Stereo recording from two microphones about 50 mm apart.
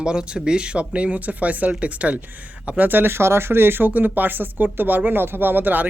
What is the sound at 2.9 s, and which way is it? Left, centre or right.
Speech, right.